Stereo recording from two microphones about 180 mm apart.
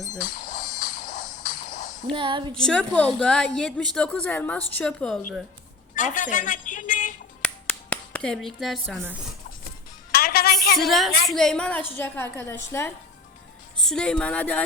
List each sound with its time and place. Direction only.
0.2 s music: 50° left (ahead or behind)
2.1 s a woman's voice: 25° right (ahead or behind)
2.6 s a woman's voice: 5° left (ahead or behind)
6.0 s a woman's voice: 45° left (ahead or behind)
7.4 s a sound: 5° left (ahead or behind)
10.1 s music: 60° left (ahead or behind)
10.8 s a woman's voice: centre (ahead or behind)
13.8 s a woman's voice: 5° left (ahead or behind)